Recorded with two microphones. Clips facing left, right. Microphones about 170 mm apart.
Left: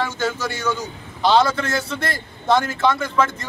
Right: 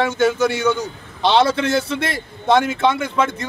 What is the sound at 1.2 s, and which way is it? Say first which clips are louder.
A man's voice: right 1 dB; 25° right (ahead or behind).